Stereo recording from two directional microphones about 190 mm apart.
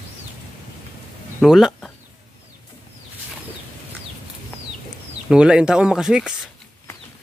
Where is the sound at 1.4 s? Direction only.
Centre (ahead or behind).